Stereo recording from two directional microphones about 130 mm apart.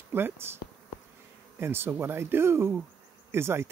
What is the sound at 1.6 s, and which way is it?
Speech, 20° right (ahead or behind).